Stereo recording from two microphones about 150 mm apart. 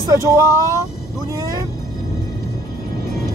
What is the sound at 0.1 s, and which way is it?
Speech, 20° right (ahead or behind).